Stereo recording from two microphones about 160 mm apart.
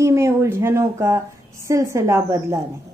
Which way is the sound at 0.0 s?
15° right (ahead or behind).